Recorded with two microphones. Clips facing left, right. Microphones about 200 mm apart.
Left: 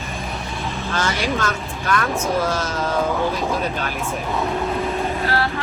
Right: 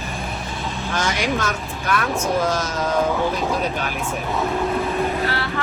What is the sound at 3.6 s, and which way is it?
Speech, 10° right (ahead or behind).